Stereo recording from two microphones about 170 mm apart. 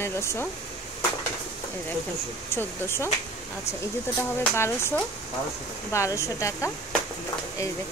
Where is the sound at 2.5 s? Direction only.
15° left (ahead or behind).